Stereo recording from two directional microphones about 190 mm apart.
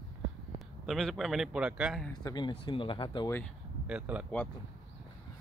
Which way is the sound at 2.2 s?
20° left (ahead or behind).